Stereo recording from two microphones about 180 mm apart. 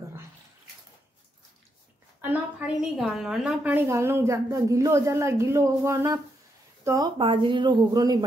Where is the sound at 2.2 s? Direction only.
5° right (ahead or behind).